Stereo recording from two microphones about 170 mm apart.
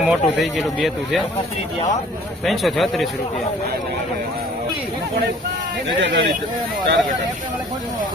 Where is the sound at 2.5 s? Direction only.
Centre (ahead or behind).